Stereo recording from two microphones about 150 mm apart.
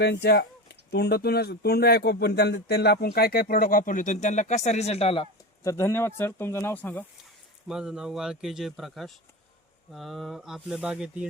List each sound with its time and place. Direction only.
0.1 s speech: 90° left
3.5 s speech: 70° left (ahead or behind); by 5.3 s 35° left (ahead or behind)
5.6 s speech: 20° left (ahead or behind)
7.7 s a man's voice: 5° right (ahead or behind)